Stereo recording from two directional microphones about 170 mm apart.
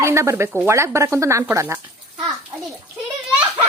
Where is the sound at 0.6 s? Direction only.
15° right (ahead or behind).